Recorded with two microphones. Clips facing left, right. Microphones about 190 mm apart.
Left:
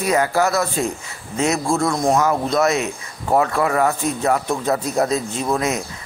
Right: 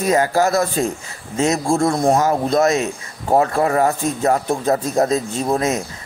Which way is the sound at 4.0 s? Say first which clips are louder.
Right 2 dB; 45° right (ahead or behind).